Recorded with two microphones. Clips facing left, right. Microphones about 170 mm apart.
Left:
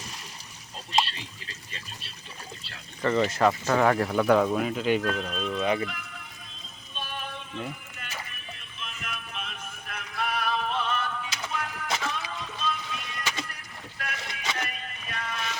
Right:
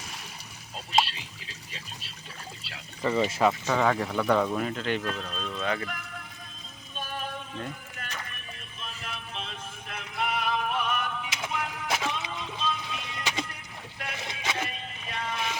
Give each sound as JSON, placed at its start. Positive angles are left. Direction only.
{"t": 0.9, "sound": "a sound", "side_deg": -5}
{"t": 2.6, "sound": "speech", "side_deg": -5}
{"t": 6.9, "sound": "music", "side_deg": -40}
{"t": 8.8, "sound": "music", "side_deg": -35}
{"t": 14.0, "sound": "boat", "side_deg": -20}
{"t": 14.4, "sound": "music", "side_deg": -10}
{"t": 14.7, "sound": "music", "side_deg": -25}